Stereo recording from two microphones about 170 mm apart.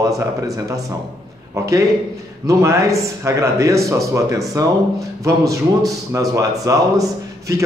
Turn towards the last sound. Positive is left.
turn(degrees=-20)  # may be behind; listen again after turning